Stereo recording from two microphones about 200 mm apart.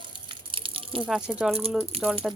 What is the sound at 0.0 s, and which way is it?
Gush, 25° right (ahead or behind).